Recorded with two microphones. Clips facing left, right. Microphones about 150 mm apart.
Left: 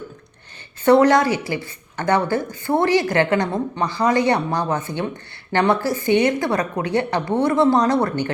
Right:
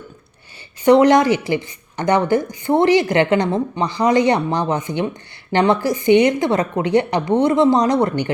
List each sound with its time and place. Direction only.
0.9 s speech: 20° right (ahead or behind)